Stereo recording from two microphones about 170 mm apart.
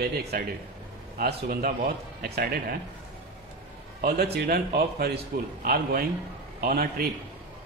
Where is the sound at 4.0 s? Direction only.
65° right (ahead or behind).